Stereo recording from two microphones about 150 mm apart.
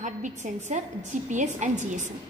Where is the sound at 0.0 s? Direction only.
55° right (ahead or behind).